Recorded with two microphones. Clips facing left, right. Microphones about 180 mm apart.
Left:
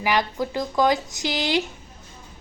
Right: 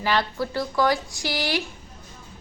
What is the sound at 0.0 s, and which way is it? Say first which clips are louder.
A woman's voice: left 1 dB; 15° left (ahead or behind).